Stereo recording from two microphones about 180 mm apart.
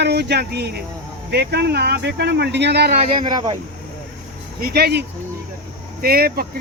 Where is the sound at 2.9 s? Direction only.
25° right (ahead or behind).